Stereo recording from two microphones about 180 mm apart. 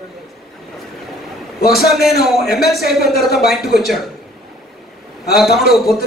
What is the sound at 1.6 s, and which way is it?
Speech, 60° left (ahead or behind).